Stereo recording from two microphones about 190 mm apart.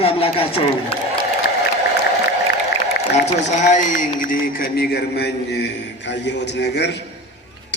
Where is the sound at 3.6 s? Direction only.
40° left (ahead or behind).